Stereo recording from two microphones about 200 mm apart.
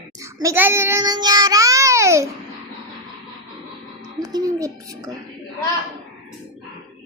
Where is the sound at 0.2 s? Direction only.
15° right (ahead or behind).